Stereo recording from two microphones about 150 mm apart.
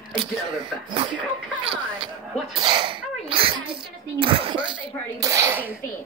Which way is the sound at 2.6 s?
35° right (ahead or behind).